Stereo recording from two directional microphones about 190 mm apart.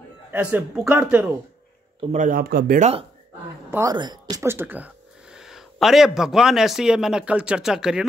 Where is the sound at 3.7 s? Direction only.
15° right (ahead or behind).